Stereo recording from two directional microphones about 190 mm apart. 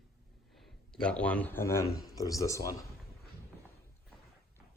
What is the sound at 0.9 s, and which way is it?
A man's voice, 5° left (ahead or behind).